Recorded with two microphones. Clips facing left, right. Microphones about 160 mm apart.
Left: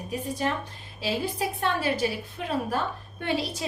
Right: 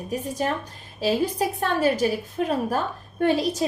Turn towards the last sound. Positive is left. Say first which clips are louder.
# right 8 dB
turn(degrees=-45)  # may be behind; listen again after turning